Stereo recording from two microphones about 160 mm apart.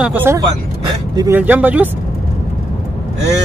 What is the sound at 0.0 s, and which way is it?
Speech, 10° right (ahead or behind).